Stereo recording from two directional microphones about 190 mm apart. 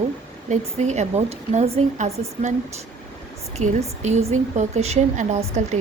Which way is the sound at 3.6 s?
40° right (ahead or behind).